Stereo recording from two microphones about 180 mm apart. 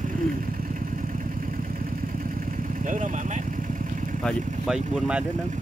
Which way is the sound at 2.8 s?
45° right (ahead or behind).